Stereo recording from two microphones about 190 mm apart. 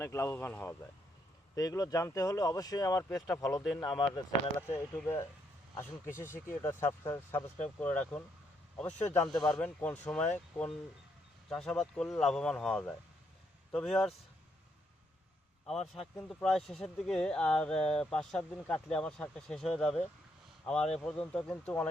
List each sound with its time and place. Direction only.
0.0 s speech: 15° left (ahead or behind)
15.6 s speech: centre (ahead or behind)